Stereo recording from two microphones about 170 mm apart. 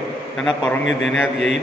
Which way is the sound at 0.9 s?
90° left.